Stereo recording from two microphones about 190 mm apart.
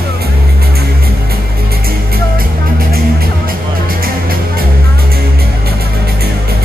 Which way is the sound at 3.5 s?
50° right (ahead or behind).